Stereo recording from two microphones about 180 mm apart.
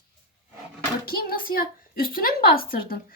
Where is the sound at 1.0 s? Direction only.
55° left (ahead or behind).